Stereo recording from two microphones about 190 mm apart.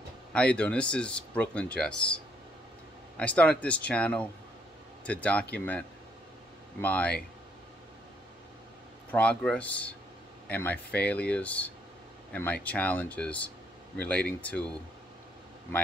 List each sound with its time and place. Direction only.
0.3 s speech: 5° left (ahead or behind)
9.1 s speech: 10° left (ahead or behind)